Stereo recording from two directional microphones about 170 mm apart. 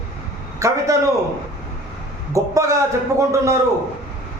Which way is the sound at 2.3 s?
20° right (ahead or behind).